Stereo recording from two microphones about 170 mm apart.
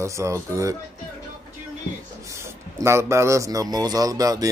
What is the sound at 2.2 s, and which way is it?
A man's voice, 15° right (ahead or behind).